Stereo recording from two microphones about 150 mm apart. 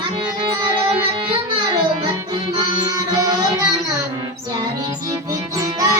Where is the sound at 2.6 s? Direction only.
30° right (ahead or behind).